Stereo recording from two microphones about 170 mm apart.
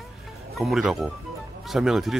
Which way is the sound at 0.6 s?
Centre (ahead or behind).